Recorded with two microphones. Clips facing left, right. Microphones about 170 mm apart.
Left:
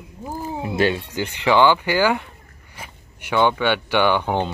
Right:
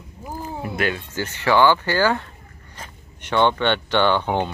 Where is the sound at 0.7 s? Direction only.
25° left (ahead or behind).